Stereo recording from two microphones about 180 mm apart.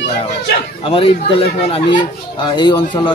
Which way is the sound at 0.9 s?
30° left (ahead or behind).